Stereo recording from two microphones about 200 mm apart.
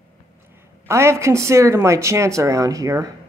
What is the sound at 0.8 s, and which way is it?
Speech, 15° right (ahead or behind).